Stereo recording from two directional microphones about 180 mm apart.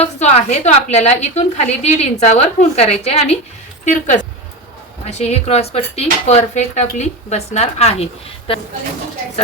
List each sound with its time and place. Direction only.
0.0 s speech: 35° left (ahead or behind)